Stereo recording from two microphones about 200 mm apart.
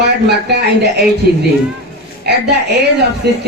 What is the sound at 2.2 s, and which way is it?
A woman's voice, 55° right (ahead or behind).